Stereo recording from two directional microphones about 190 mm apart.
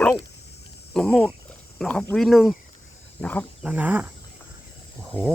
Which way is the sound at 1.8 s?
5° left (ahead or behind).